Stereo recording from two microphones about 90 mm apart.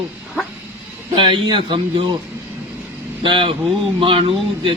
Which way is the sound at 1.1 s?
65° right (ahead or behind).